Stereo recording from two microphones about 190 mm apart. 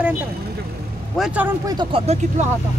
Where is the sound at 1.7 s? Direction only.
25° right (ahead or behind).